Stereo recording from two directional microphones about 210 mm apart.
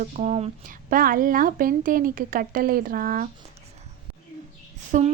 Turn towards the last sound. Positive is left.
turn(degrees=-35)  # may be behind; listen again after turning